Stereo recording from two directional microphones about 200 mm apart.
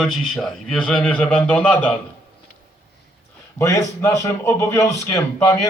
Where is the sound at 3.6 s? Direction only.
15° left (ahead or behind).